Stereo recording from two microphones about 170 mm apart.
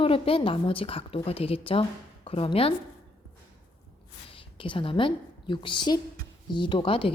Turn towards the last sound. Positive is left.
turn(degrees=30)  # may be behind; listen again after turning